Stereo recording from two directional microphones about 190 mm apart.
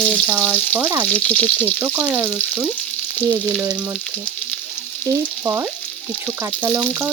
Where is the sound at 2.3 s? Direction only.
5° left (ahead or behind).